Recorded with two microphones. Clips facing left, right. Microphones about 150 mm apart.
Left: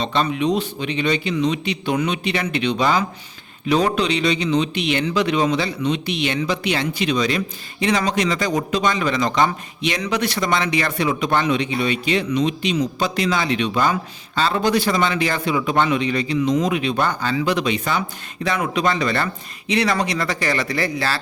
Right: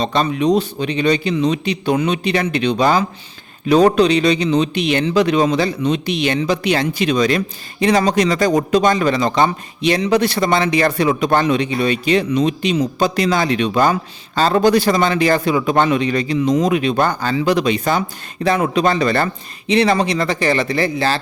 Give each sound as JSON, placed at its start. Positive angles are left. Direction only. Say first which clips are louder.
{"t": 0.0, "sound": "a man's voice", "louder": "right 3 dB", "side_deg": -40}